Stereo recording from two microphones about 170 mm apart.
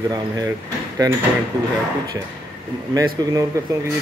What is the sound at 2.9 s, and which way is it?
Speech, 20° right (ahead or behind).